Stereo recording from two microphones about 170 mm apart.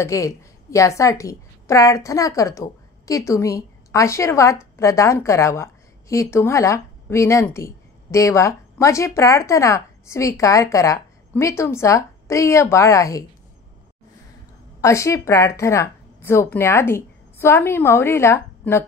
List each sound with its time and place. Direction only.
0.0 s a woman's voice: 20° left (ahead or behind)
14.8 s speech: 15° left (ahead or behind)